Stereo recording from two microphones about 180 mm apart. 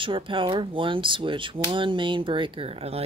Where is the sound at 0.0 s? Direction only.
30° right (ahead or behind).